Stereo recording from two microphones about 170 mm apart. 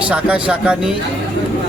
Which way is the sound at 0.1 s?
5° right (ahead or behind).